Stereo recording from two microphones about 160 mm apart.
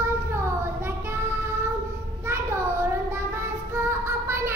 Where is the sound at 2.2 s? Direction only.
15° right (ahead or behind).